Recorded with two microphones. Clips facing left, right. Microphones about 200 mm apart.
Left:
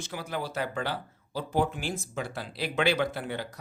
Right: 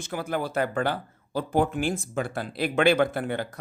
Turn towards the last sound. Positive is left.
turn(degrees=-50)  # may be behind; listen again after turning